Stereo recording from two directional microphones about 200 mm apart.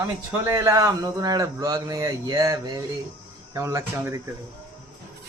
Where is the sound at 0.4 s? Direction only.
15° right (ahead or behind).